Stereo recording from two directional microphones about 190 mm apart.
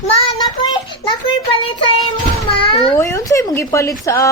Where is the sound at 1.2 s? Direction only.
30° left (ahead or behind).